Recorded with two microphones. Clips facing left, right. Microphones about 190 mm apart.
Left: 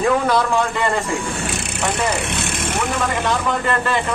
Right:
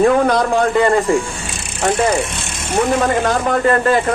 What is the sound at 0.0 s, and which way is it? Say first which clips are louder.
Speech: right 4 dB; 40° right (ahead or behind).